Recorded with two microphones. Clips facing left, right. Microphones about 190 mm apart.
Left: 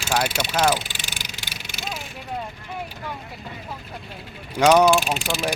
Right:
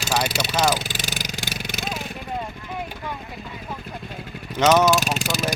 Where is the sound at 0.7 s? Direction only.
40° right (ahead or behind).